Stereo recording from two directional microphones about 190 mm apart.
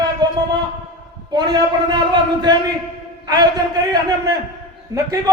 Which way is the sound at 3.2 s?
20° right (ahead or behind).